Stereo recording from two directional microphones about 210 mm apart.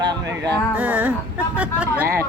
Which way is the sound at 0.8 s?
5° right (ahead or behind).